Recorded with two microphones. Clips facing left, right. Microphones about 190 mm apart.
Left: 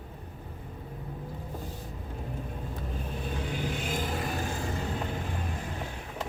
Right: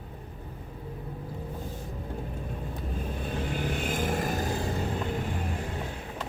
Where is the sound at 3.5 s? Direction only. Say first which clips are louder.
Right 3 dB; 50° right (ahead or behind).